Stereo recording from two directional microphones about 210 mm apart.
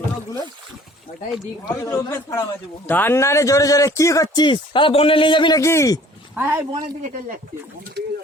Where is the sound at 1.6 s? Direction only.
15° left (ahead or behind).